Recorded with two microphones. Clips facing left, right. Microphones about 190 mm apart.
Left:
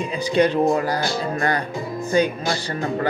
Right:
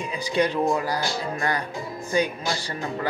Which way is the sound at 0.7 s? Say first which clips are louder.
Left 4 dB; 50° left (ahead or behind).